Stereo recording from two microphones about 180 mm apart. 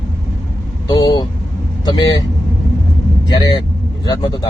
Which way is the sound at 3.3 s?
20° left (ahead or behind).